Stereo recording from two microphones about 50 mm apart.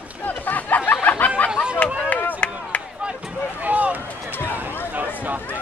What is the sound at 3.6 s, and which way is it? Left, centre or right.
Run, right.